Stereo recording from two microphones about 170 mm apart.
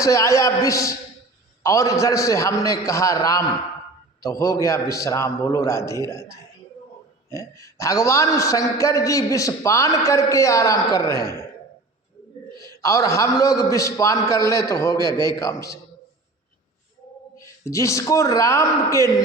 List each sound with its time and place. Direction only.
0.0 s a man's voice: 20° left (ahead or behind)
12.6 s a man's voice: 20° left (ahead or behind)
17.3 s a man's voice: 15° left (ahead or behind)